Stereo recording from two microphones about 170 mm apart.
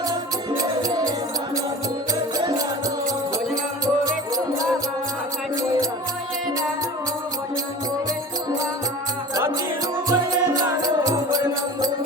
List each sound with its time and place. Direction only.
0.1 s music: 20° right (ahead or behind)
4.0 s music: 20° right (ahead or behind)
10.1 s music: 20° right (ahead or behind)